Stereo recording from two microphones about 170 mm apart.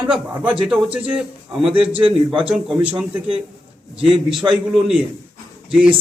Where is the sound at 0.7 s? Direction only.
10° right (ahead or behind).